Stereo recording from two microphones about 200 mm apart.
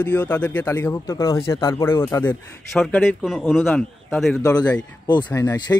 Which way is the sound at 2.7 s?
Centre (ahead or behind).